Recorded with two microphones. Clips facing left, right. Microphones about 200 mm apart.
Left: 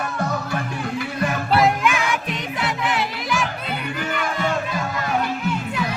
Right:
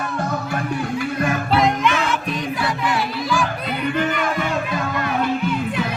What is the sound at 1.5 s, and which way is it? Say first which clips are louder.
Music: even; 10° left (ahead or behind).